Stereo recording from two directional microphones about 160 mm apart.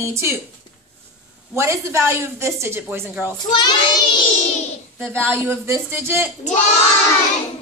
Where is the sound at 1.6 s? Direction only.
15° right (ahead or behind).